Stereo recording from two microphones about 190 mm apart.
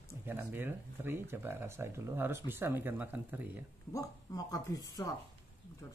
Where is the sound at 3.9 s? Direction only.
20° left (ahead or behind).